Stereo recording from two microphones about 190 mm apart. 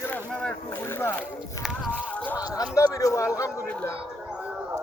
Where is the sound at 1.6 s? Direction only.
5° right (ahead or behind).